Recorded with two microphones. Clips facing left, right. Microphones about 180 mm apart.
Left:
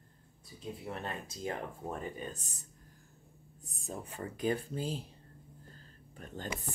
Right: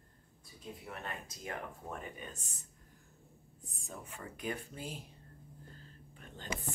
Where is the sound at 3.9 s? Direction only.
35° left (ahead or behind).